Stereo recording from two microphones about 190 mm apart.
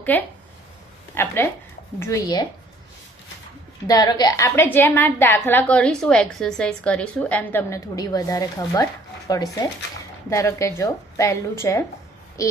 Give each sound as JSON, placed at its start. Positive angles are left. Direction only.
{"t": 0.1, "sound": "a woman's voice", "side_deg": 10}
{"t": 3.8, "sound": "a woman's voice", "side_deg": 20}